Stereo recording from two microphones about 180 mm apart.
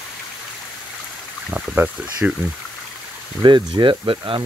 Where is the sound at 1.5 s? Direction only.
5° right (ahead or behind).